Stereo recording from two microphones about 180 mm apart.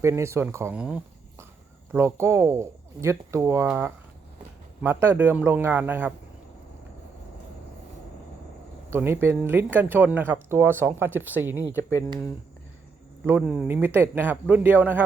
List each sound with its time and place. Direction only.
0.0 s speech: 15° right (ahead or behind)
8.9 s speech: 15° right (ahead or behind)
11.8 s speech: 15° left (ahead or behind)
13.2 s speech: 10° right (ahead or behind)